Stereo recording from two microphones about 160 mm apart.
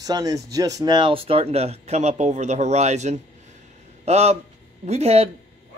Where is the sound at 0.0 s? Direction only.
25° right (ahead or behind).